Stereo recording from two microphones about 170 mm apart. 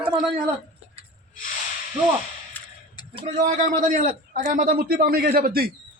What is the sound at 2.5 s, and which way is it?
Whip, 10° left (ahead or behind).